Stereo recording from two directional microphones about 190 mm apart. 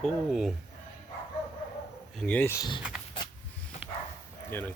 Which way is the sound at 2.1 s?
5° left (ahead or behind).